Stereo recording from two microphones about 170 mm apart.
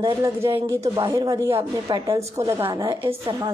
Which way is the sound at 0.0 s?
20° right (ahead or behind).